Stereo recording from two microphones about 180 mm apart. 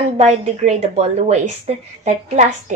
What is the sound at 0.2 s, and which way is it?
A woman's voice, 35° right (ahead or behind).